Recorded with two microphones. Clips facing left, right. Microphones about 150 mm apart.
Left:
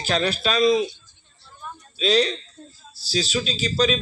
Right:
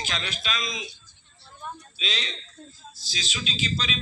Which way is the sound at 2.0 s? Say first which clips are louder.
Left 17 dB; 40° left (ahead or behind).